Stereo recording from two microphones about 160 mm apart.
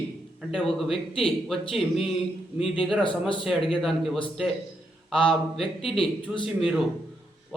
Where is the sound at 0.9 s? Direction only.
35° left (ahead or behind).